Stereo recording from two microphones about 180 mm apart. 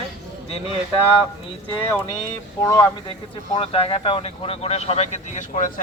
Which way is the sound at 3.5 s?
30° left (ahead or behind).